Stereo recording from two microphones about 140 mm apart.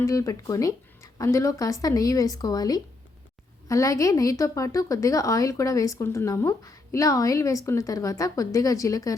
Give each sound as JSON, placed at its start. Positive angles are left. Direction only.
{"t": 0.0, "sound": "a woman's voice", "side_deg": 25}